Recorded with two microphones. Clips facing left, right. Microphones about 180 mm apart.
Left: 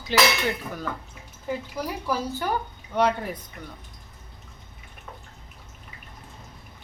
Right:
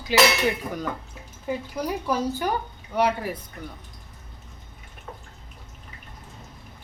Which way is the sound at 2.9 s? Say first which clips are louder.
Even; 5° right (ahead or behind).